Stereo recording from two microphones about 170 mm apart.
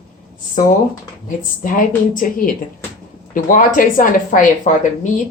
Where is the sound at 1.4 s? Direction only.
50° left (ahead or behind).